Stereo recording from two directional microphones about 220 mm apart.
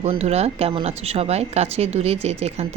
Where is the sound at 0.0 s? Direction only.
30° right (ahead or behind).